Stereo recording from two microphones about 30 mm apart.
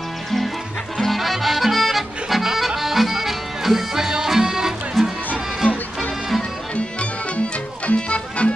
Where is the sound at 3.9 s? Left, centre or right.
Centre.